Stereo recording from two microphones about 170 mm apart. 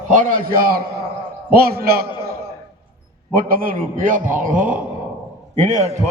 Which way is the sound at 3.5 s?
55° right (ahead or behind).